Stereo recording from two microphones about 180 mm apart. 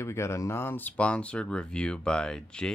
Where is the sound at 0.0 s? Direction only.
15° left (ahead or behind).